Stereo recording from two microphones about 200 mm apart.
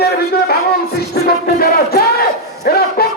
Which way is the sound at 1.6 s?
50° left (ahead or behind).